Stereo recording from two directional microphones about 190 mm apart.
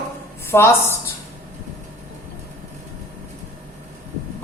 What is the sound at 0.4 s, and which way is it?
Speech, 15° left (ahead or behind).